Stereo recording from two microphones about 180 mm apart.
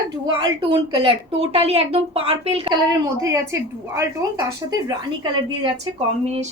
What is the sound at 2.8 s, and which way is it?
A woman's voice, 20° right (ahead or behind).